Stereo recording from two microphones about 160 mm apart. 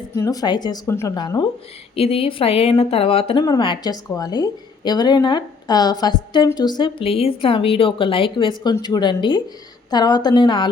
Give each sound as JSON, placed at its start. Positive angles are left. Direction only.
{"t": 0.2, "sound": "a woman's voice", "side_deg": 20}
{"t": 2.0, "sound": "a woman's voice", "side_deg": 40}